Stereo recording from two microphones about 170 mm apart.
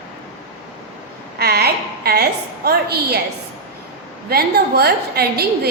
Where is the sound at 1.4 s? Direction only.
70° right (ahead or behind).